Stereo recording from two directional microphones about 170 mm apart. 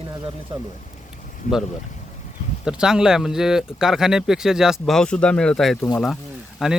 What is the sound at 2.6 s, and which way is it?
Speech, 5° right (ahead or behind).